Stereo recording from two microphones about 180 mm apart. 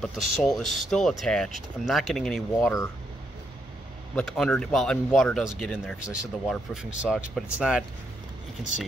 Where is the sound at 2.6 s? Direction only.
15° left (ahead or behind).